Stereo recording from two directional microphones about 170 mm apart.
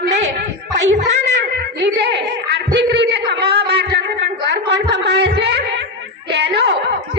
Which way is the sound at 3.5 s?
75° right (ahead or behind).